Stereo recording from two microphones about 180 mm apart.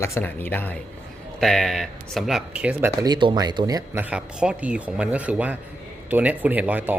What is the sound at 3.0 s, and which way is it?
Speech, 25° right (ahead or behind).